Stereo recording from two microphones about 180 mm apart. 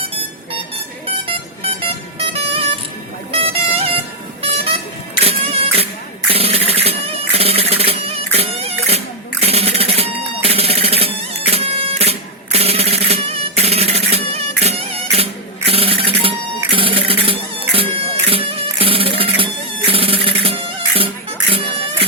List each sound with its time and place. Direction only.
1.0 s vehicle: 30° right (ahead or behind)
3.3 s music: 35° right (ahead or behind)
5.2 s music: 35° right (ahead or behind)
6.3 s cat: 35° right (ahead or behind)
9.4 s music: 35° right (ahead or behind)